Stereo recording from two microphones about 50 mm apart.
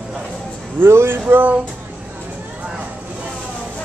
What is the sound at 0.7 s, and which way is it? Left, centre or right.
Speech, right.